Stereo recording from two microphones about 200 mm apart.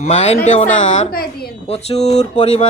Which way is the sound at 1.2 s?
50° left (ahead or behind).